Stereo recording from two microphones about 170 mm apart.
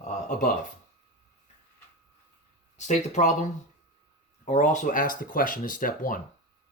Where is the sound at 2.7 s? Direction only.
45° left (ahead or behind).